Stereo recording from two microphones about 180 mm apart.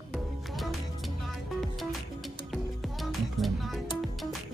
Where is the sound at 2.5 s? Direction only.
Centre (ahead or behind).